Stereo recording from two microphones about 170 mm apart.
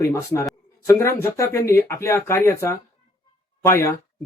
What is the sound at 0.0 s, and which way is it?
Speech, 20° left (ahead or behind).